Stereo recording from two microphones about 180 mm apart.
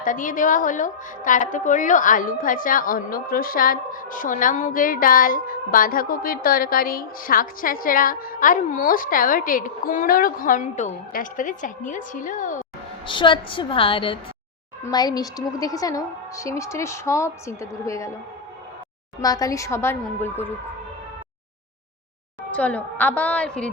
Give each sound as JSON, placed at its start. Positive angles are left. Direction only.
{"t": 0.0, "sound": "a woman's voice", "side_deg": 50}
{"t": 13.1, "sound": "a woman's voice", "side_deg": 25}
{"t": 19.2, "sound": "a woman's voice", "side_deg": 20}
{"t": 22.5, "sound": "a woman's voice", "side_deg": 5}